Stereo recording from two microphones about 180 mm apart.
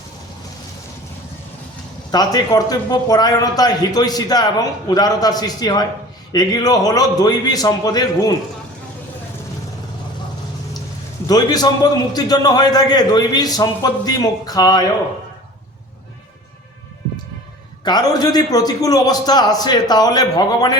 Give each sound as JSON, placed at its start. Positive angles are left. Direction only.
{"t": 2.1, "sound": "speech", "side_deg": 20}
{"t": 11.3, "sound": "speech", "side_deg": 20}
{"t": 17.8, "sound": "speech", "side_deg": 20}